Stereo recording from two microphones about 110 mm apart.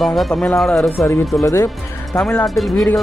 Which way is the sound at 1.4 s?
30° left (ahead or behind).